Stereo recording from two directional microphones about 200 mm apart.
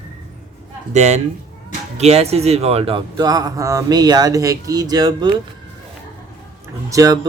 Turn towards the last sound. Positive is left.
turn(degrees=-15)  # may be behind; listen again after turning